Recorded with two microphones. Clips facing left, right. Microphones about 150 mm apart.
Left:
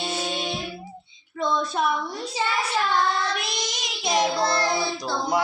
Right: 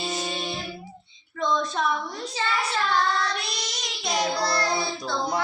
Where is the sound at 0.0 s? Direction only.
5° left (ahead or behind).